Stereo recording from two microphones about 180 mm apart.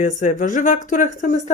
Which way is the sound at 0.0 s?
45° left (ahead or behind).